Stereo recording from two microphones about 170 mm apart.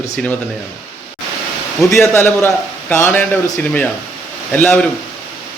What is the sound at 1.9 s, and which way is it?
A man's voice, 15° left (ahead or behind).